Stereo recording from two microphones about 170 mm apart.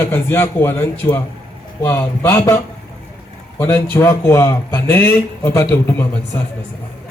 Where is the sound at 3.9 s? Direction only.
15° left (ahead or behind).